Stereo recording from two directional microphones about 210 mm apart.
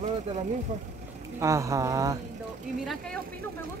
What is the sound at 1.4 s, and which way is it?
Speech, 15° right (ahead or behind).